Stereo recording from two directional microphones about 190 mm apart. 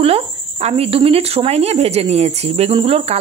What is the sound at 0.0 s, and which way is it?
Speech, 35° right (ahead or behind).